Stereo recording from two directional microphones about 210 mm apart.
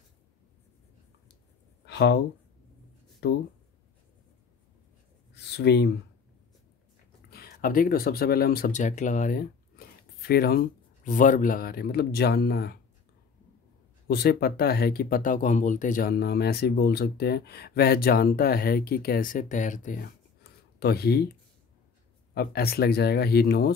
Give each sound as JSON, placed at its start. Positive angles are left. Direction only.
{"t": 1.9, "sound": "a sound", "side_deg": 55}
{"t": 3.2, "sound": "speech", "side_deg": 50}
{"t": 5.3, "sound": "speech", "side_deg": 55}
{"t": 7.3, "sound": "speech", "side_deg": 45}
{"t": 14.0, "sound": "speech", "side_deg": 50}
{"t": 22.3, "sound": "speech", "side_deg": 50}